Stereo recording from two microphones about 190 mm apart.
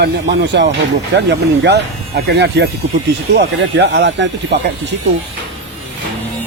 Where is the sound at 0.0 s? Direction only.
65° right (ahead or behind).